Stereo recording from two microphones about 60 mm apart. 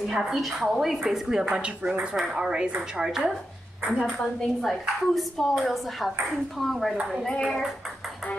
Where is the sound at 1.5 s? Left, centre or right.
Right.